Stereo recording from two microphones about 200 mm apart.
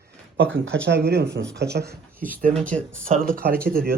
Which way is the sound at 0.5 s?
70° right (ahead or behind).